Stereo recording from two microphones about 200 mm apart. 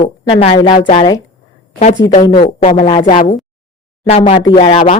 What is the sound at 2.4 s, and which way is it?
A woman's voice, 35° left (ahead or behind).